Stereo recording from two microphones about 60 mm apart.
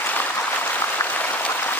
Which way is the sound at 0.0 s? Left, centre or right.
Left.